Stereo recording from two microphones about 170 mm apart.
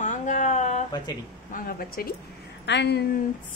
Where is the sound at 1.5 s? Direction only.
60° left (ahead or behind).